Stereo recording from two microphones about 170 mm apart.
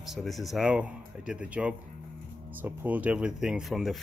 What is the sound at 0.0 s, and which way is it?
Speech, centre (ahead or behind).